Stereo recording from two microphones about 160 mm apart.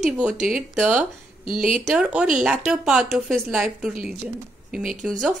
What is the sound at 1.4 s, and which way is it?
Speech, 60° right (ahead or behind).